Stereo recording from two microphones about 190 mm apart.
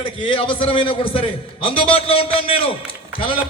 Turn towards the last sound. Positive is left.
turn(degrees=30)  # may be behind; listen again after turning